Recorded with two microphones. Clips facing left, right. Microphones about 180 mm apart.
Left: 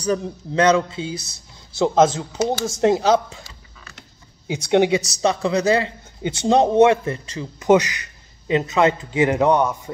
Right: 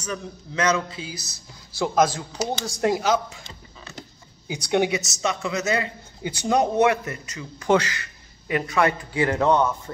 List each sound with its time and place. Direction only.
0.0 s a man's voice: 35° left (ahead or behind)
4.5 s a man's voice: 25° left (ahead or behind)